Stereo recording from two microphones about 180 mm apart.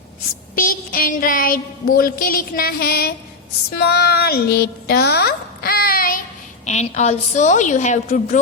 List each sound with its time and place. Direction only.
0.5 s a sound: 55° left (ahead or behind)
3.8 s speech: 65° left (ahead or behind)
6.7 s a woman's voice: 40° left (ahead or behind)